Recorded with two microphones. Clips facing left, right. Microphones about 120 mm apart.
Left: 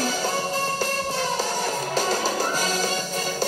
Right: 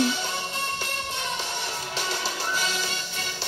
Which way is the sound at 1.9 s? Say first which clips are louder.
Left 8 dB; 40° left (ahead or behind).